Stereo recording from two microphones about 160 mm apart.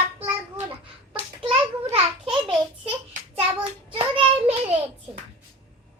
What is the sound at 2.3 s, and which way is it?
Speech, 35° right (ahead or behind).